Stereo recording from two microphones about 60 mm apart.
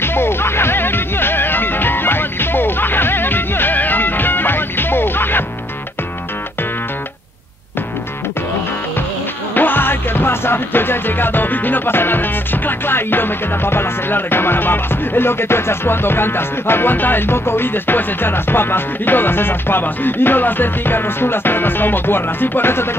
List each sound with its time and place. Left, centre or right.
0.0 s music: left
9.6 s music: left